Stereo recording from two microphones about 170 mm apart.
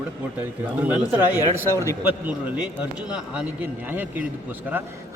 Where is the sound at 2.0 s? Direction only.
10° right (ahead or behind).